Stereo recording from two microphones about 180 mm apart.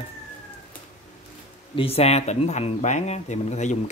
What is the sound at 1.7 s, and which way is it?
Speech, 35° left (ahead or behind).